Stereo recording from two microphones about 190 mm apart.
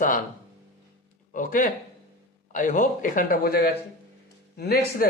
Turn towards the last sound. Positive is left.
turn(degrees=55)  # may be behind; listen again after turning